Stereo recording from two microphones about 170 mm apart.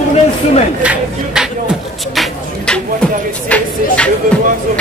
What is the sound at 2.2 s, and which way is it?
Music, 5° left (ahead or behind).